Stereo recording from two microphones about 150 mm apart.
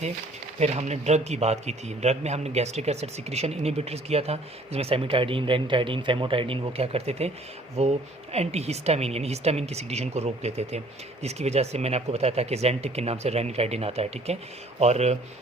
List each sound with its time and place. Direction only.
0.6 s a man's voice: 45° right (ahead or behind)